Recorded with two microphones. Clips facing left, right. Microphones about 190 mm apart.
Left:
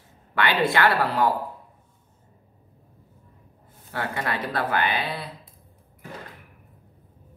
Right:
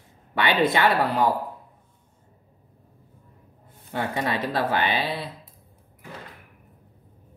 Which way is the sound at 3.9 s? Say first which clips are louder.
Right 2 dB; 20° right (ahead or behind).